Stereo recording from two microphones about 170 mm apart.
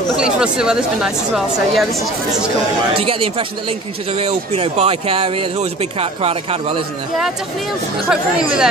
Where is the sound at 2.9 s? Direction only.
35° right (ahead or behind).